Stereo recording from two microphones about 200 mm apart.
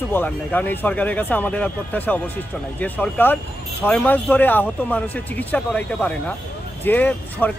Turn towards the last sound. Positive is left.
turn(degrees=10)  # may be behind; listen again after turning